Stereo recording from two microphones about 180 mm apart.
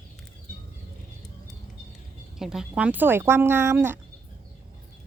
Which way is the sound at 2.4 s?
5° right (ahead or behind).